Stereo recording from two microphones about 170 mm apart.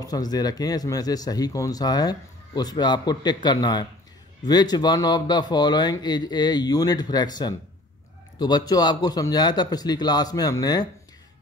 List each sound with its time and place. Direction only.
0.0 s speech: 20° left (ahead or behind)